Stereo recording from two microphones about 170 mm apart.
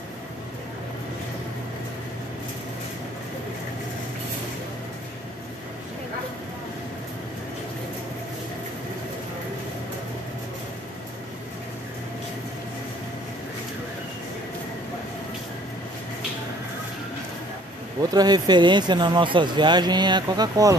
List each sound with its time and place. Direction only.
18.1 s speech: 25° right (ahead or behind)